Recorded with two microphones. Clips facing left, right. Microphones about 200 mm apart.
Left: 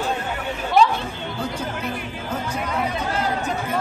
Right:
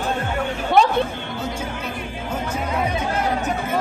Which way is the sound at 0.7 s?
60° right (ahead or behind).